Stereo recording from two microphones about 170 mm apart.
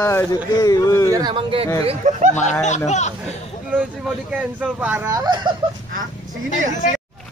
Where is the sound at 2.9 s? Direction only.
45° left (ahead or behind).